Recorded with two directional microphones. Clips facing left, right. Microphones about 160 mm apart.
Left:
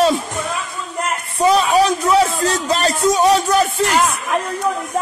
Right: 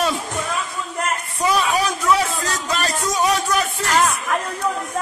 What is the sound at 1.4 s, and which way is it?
Speech, 30° left (ahead or behind).